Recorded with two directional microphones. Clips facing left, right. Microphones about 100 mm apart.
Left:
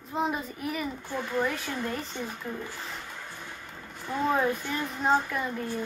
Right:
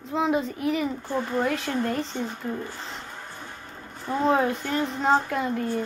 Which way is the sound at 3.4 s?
15° right (ahead or behind).